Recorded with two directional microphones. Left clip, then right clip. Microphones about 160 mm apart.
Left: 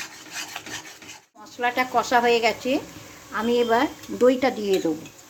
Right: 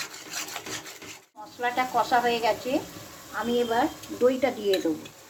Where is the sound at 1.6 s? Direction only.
50° left (ahead or behind).